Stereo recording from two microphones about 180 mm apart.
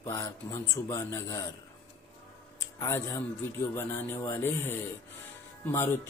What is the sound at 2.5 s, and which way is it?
A man's voice, 15° left (ahead or behind).